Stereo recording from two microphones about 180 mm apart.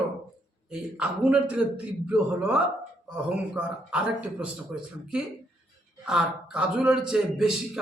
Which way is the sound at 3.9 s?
5° right (ahead or behind).